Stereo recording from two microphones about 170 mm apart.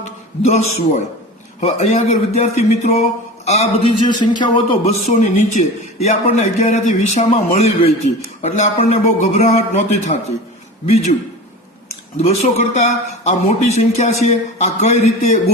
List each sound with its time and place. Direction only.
0.4 s a man's voice: 40° left (ahead or behind)
4.0 s a man's voice: 25° left (ahead or behind)
12.3 s a man's voice: 40° left (ahead or behind)